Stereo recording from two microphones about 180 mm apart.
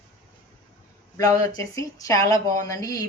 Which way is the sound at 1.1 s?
15° left (ahead or behind).